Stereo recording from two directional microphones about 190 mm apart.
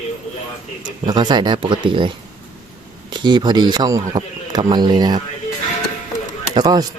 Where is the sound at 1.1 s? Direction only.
20° right (ahead or behind).